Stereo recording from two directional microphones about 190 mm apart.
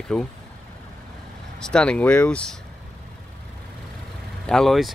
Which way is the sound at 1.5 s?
5° left (ahead or behind).